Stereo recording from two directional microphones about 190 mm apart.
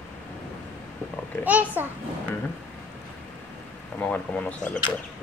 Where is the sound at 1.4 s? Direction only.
5° right (ahead or behind).